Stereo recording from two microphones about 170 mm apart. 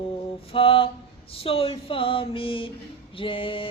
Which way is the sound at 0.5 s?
35° left (ahead or behind).